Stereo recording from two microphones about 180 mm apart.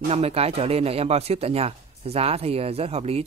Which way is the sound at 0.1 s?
35° right (ahead or behind).